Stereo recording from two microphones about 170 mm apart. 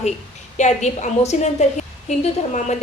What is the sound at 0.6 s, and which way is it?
A woman's voice, 40° left (ahead or behind).